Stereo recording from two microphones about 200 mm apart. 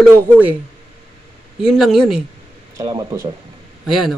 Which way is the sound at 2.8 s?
20° right (ahead or behind).